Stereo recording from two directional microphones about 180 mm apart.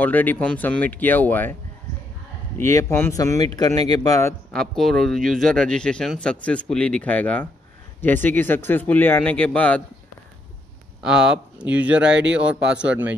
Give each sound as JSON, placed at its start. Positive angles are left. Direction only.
{"t": 0.0, "sound": "speech", "side_deg": 10}
{"t": 4.6, "sound": "speech", "side_deg": 0}
{"t": 11.0, "sound": "a man's voice", "side_deg": -5}